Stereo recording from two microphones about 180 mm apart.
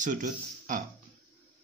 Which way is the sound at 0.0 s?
45° right (ahead or behind).